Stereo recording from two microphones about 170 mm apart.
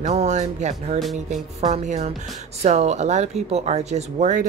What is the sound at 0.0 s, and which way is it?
Speech, 45° right (ahead or behind).